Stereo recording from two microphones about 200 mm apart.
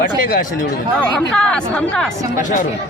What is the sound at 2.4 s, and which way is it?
Speech, 40° left (ahead or behind).